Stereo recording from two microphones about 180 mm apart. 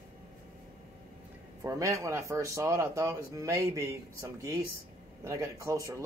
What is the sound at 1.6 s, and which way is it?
A man's voice, 15° right (ahead or behind).